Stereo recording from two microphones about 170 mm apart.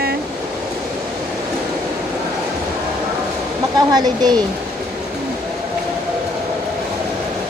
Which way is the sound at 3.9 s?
25° right (ahead or behind).